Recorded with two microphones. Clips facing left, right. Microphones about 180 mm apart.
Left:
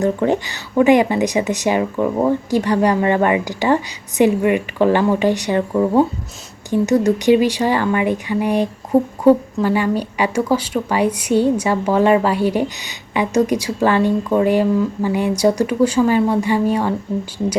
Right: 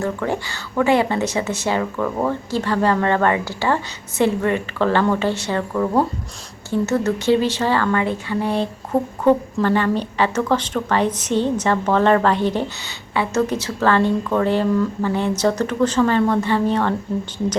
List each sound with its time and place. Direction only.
0.0 s speech: 20° left (ahead or behind)
6.7 s speech: 15° left (ahead or behind)